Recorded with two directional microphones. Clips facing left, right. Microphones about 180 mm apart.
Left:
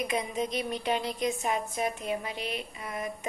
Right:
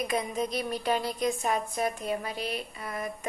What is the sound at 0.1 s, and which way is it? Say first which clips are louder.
Speech: right 1 dB; 20° left (ahead or behind).